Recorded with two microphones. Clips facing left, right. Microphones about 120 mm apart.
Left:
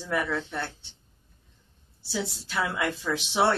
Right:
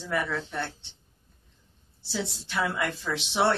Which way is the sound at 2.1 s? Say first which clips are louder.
Left 1 dB; centre (ahead or behind).